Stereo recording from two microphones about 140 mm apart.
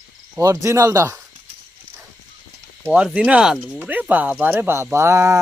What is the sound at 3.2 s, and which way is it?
Speech, 5° right (ahead or behind).